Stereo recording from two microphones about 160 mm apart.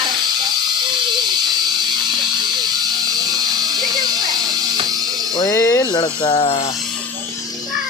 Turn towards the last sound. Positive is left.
turn(degrees=40)  # may be behind; listen again after turning